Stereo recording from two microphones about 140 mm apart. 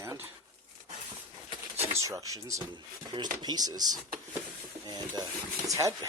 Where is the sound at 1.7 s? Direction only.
45° right (ahead or behind).